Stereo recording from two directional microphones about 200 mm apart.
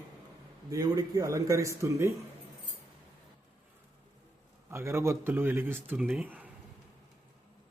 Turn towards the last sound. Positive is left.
turn(degrees=-10)  # may be behind; listen again after turning